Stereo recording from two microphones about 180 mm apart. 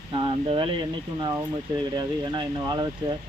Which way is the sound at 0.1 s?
25° right (ahead or behind).